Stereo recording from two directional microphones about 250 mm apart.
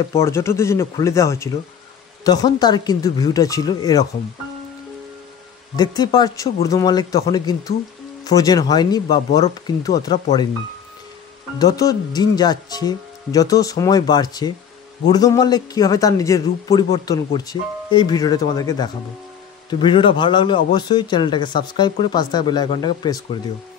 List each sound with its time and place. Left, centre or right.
0.1 s a man's voice: centre
5.8 s a man's voice: centre
11.5 s a man's voice: centre